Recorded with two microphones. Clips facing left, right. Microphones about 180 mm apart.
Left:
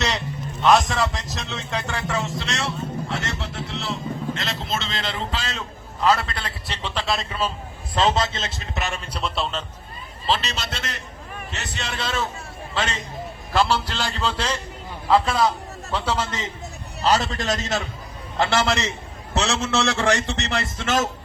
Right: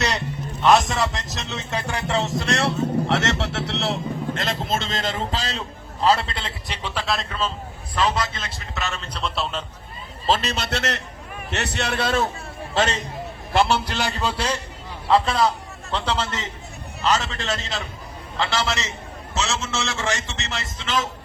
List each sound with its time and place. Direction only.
0.6 s a sound: centre (ahead or behind)
1.9 s speech: 15° right (ahead or behind)
2.1 s speech: 40° right (ahead or behind)
2.5 s vehicle: 60° right (ahead or behind)
4.4 s a sound: 50° right (ahead or behind); by 6.7 s 25° right (ahead or behind)
6.8 s speech: 5° right (ahead or behind)
7.9 s speech: 25° left (ahead or behind)
9.2 s a man's voice: centre (ahead or behind)
10.2 s a man's voice: 50° right (ahead or behind)
12.7 s speech: 40° right (ahead or behind)
13.5 s a man's voice: 20° right (ahead or behind)
15.0 s a man's voice: centre (ahead or behind)
17.0 s a man's voice: 35° left (ahead or behind)
18.3 s a man's voice: 55° left (ahead or behind)